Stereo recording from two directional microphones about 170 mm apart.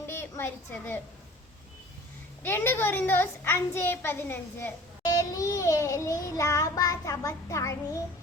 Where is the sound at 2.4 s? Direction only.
15° left (ahead or behind).